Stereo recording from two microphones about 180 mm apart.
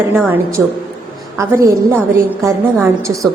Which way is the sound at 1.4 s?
15° right (ahead or behind).